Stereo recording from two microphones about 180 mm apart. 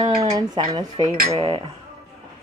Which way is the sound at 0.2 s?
25° right (ahead or behind).